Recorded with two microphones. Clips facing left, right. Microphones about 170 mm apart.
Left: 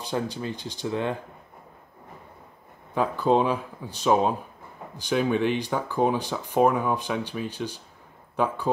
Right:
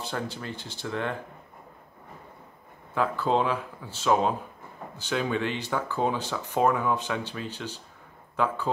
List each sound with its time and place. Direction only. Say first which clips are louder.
0.0 s speech: left 4 dB; 15° left (ahead or behind)
2.9 s speech: left 3 dB; 15° left (ahead or behind)